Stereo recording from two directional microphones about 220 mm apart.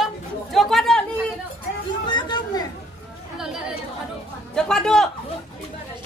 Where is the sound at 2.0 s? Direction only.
20° left (ahead or behind).